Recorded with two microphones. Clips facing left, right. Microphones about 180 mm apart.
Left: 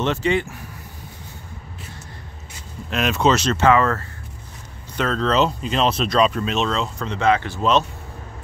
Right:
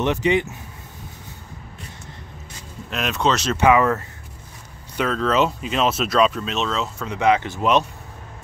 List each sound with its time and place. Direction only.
0.0 s speech: 15° right (ahead or behind)
2.9 s speech: centre (ahead or behind)
3.5 s speech: 15° right (ahead or behind)